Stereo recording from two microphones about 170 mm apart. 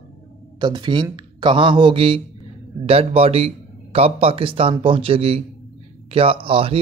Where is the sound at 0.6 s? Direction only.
25° right (ahead or behind).